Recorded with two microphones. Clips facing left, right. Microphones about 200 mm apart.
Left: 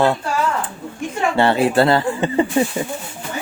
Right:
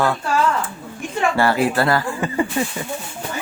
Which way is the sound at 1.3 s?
25° left (ahead or behind).